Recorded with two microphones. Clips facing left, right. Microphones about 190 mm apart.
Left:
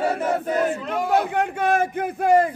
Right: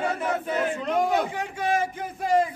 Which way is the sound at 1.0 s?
60° left (ahead or behind).